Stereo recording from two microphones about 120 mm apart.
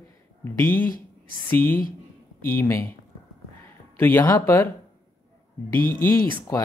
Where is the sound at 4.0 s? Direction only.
15° left (ahead or behind).